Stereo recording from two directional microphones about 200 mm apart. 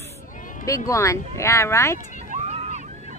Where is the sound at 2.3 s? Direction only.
30° right (ahead or behind).